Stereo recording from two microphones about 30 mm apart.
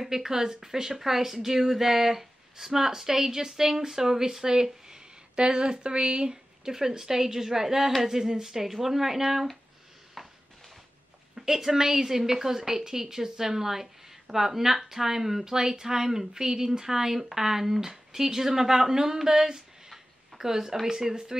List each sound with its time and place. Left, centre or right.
0.0 s a woman's voice: centre
10.2 s a sound: centre
11.3 s a woman's voice: centre